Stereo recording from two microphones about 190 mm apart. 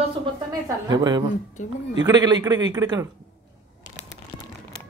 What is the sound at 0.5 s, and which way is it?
A man's voice, 20° right (ahead or behind).